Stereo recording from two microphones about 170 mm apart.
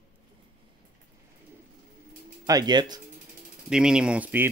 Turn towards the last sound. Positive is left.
turn(degrees=-10)  # may be behind; listen again after turning